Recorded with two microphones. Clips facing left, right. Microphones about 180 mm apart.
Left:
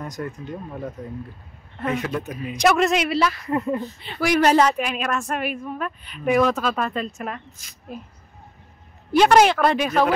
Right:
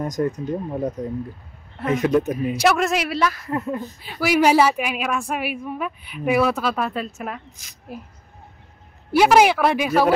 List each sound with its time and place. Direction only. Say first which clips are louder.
0.0 s speech: right 8 dB; 40° right (ahead or behind)
2.5 s speech: left 2 dB; 5° right (ahead or behind)
9.1 s speech: even; 10° right (ahead or behind)